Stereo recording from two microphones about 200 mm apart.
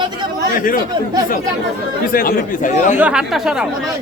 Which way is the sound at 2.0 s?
45° left (ahead or behind).